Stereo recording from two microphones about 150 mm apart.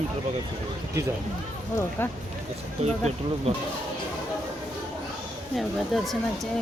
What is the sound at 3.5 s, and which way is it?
Speech, 40° right (ahead or behind).